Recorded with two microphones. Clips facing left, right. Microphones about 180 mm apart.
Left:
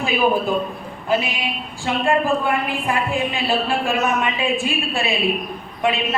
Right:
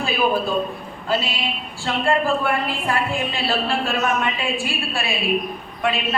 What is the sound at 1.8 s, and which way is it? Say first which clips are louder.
A woman's voice: left 1 dB; 15° left (ahead or behind).